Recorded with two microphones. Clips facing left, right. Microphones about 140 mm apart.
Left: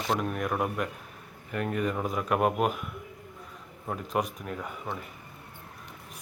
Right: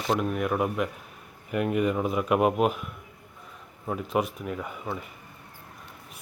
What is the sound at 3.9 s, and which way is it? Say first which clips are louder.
Speech: right 3 dB; centre (ahead or behind).